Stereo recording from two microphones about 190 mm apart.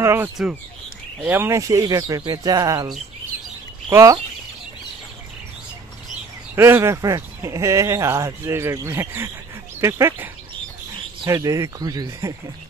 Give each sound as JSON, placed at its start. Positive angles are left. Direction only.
{"t": 0.0, "sound": "speech", "side_deg": -15}
{"t": 3.9, "sound": "speech", "side_deg": -15}
{"t": 6.5, "sound": "speech", "side_deg": -15}